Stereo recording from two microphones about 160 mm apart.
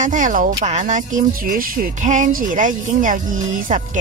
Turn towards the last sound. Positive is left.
turn(degrees=-50)  # may be behind; listen again after turning